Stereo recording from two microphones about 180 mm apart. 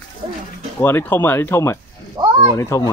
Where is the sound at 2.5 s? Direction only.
15° left (ahead or behind).